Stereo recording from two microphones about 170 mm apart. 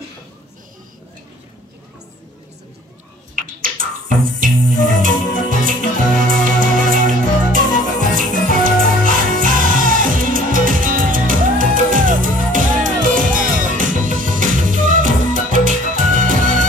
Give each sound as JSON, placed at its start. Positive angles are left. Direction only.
{"t": 3.3, "sound": "finger snapping", "side_deg": -55}
{"t": 4.4, "sound": "music", "side_deg": -50}